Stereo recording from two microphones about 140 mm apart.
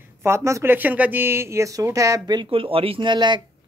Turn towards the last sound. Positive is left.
turn(degrees=-35)  # may be behind; listen again after turning